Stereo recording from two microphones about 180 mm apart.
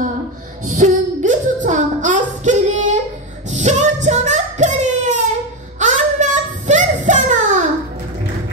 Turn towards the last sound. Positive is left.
turn(degrees=-40)  # may be behind; listen again after turning